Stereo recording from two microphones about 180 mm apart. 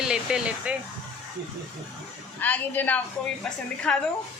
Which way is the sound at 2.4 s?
10° left (ahead or behind).